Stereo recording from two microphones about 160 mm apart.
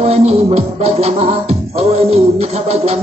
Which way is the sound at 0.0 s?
40° right (ahead or behind).